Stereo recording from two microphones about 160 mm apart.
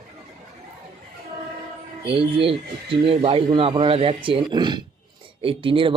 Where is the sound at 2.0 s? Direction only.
35° right (ahead or behind).